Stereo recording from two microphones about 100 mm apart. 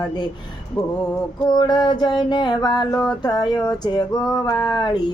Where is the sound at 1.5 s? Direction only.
45° left (ahead or behind).